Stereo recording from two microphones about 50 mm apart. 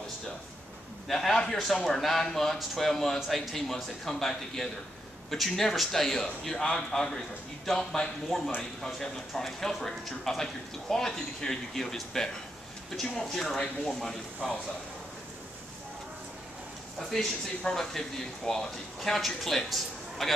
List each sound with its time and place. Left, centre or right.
1.0 s a man's voice: centre
17.1 s a man's voice: centre